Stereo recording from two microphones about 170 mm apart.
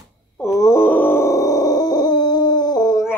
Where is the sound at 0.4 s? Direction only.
20° left (ahead or behind).